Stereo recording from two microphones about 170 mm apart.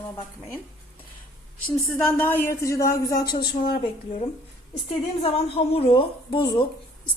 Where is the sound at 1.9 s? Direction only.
5° left (ahead or behind); by 3.4 s 25° left (ahead or behind).